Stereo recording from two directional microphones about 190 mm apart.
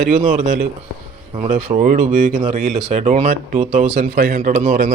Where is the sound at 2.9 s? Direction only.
35° right (ahead or behind).